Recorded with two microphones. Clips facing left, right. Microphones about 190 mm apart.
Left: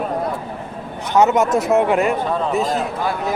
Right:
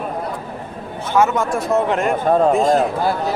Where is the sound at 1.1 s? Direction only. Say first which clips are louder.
Left 2 dB; 20° left (ahead or behind).